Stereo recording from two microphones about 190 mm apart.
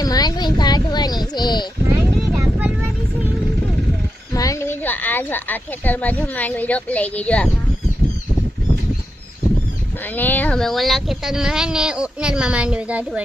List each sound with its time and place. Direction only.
0.0 s a sound: 20° left (ahead or behind)
2.4 s vehicle: 10° right (ahead or behind)
4.4 s speech: 15° left (ahead or behind)
10.2 s speech: 10° left (ahead or behind); by 13.2 s 5° right (ahead or behind)